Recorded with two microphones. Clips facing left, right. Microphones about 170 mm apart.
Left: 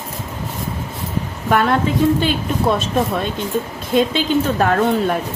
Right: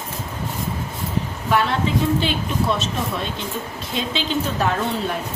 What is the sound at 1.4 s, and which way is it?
A woman's voice, 50° left (ahead or behind).